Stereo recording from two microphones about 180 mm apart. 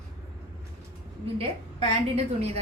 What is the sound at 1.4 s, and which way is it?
Speech, 35° right (ahead or behind).